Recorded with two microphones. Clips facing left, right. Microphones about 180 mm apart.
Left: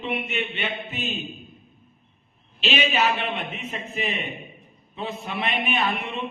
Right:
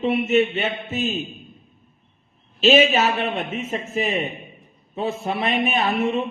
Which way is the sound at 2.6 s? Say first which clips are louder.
Right 7 dB; 40° right (ahead or behind).